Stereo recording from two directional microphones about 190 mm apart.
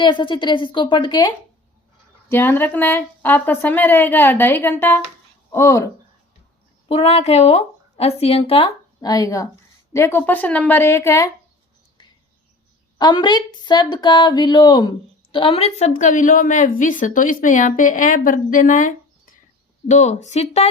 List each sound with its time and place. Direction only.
0.0 s speech: 25° left (ahead or behind)
2.3 s speech: 10° left (ahead or behind)
6.8 s speech: 30° left (ahead or behind); by 11.3 s 15° left (ahead or behind)
13.0 s speech: 25° left (ahead or behind)